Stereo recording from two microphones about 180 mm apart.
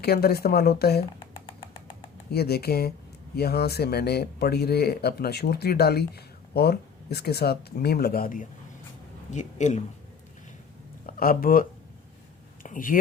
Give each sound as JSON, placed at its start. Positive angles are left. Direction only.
{"t": 0.0, "sound": "speech", "side_deg": 60}
{"t": 2.3, "sound": "speech", "side_deg": 60}
{"t": 11.0, "sound": "speech", "side_deg": 55}
{"t": 12.6, "sound": "speech", "side_deg": 50}